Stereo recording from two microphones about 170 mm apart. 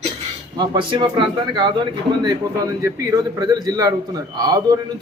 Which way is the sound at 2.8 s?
20° right (ahead or behind).